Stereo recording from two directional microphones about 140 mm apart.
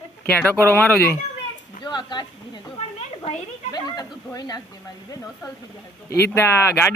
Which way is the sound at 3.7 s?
30° left (ahead or behind).